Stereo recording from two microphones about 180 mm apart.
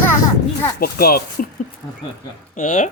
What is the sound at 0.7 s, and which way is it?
Speech, 55° left (ahead or behind).